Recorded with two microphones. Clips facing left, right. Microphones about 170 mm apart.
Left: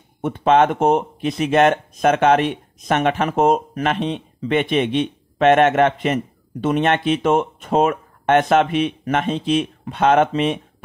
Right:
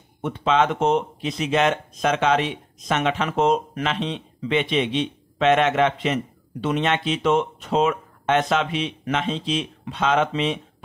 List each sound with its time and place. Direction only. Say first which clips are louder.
0.2 s speech: left 5 dB; 50° left (ahead or behind)